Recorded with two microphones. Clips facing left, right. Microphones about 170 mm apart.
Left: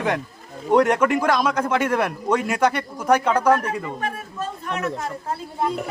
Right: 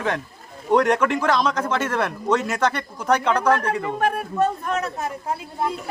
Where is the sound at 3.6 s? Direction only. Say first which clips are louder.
Right 4 dB; 65° right (ahead or behind).